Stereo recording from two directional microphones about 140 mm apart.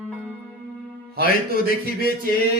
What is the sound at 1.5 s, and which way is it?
Speech, 90° left.